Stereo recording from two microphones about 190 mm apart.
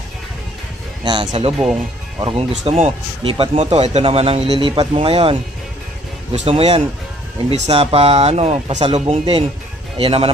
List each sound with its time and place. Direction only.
1.0 s speech: 20° right (ahead or behind)